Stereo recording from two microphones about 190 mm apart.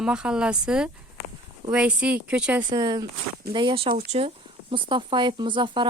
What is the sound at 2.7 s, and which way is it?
Speech, 20° right (ahead or behind).